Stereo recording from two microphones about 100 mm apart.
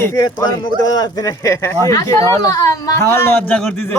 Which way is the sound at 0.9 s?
40° left (ahead or behind).